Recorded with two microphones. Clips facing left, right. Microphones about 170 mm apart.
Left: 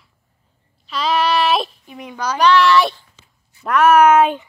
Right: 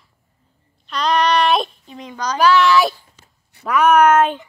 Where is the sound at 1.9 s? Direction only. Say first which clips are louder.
Left 1 dB; 10° left (ahead or behind).